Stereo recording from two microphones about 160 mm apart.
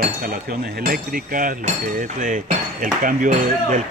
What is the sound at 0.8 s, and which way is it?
Speech, 60° right (ahead or behind).